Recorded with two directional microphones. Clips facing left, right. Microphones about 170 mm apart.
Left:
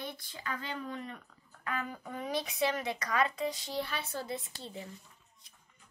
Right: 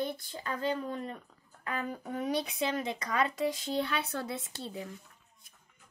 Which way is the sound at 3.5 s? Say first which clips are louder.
Right 4 dB; 65° right (ahead or behind).